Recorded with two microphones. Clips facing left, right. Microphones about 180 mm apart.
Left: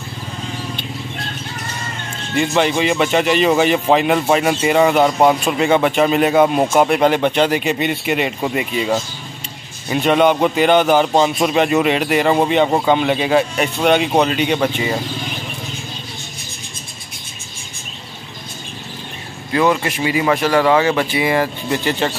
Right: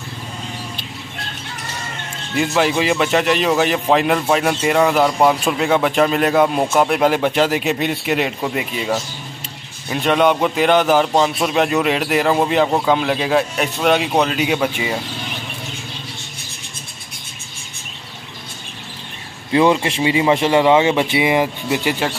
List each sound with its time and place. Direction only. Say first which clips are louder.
2.3 s a man's voice: left 1 dB; 5° right (ahead or behind)
19.5 s speech: right 2 dB; 25° right (ahead or behind); by 22.1 s 10° right (ahead or behind)